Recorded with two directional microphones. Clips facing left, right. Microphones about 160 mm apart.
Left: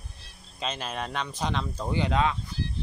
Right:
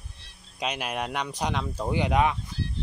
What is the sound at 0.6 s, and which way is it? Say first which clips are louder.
Speech: right 2 dB; 10° right (ahead or behind).